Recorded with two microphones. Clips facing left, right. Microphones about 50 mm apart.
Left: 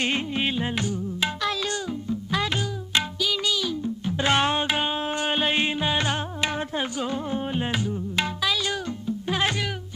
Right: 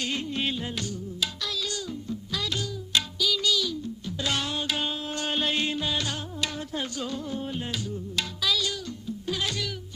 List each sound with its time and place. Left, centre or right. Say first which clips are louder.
0.0 s music: left 4 dB; left